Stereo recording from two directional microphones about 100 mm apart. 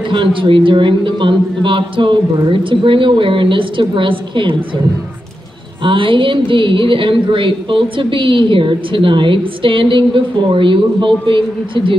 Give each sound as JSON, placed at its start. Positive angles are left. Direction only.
{"t": 0.1, "sound": "a woman's voice", "side_deg": -60}
{"t": 5.9, "sound": "a woman's voice", "side_deg": -60}